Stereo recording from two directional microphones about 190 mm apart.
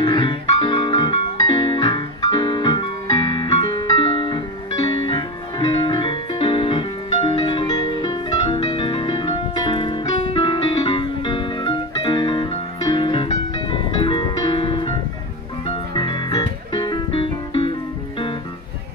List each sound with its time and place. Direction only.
0.0 s music: 25° left (ahead or behind)